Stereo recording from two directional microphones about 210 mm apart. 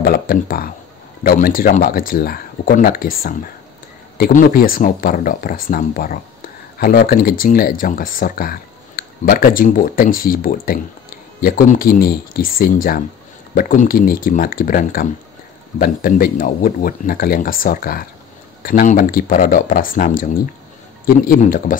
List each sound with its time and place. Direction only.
0.0 s speech: 45° left (ahead or behind)